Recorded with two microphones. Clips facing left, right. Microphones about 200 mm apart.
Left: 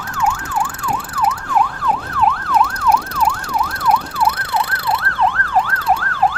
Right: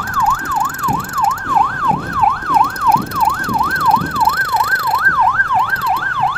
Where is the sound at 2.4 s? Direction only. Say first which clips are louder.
Right 1 dB; centre (ahead or behind).